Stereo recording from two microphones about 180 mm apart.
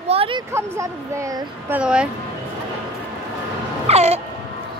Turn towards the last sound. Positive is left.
turn(degrees=-35)  # may be behind; listen again after turning